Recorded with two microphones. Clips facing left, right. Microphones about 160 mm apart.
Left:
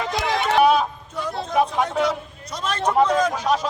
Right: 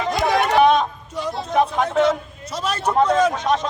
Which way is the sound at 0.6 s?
5° left (ahead or behind).